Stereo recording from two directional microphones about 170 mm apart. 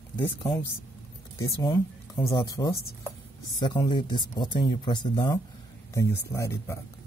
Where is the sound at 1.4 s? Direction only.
25° left (ahead or behind).